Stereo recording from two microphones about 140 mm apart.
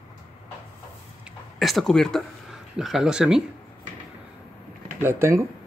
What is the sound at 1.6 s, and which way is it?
Speech, centre (ahead or behind).